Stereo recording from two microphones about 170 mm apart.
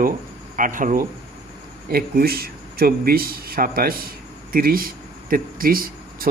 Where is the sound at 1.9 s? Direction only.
60° right (ahead or behind).